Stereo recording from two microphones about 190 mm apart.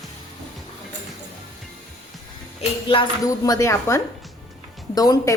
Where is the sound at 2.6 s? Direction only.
30° left (ahead or behind).